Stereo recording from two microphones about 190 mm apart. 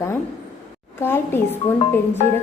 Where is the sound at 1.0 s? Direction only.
10° left (ahead or behind).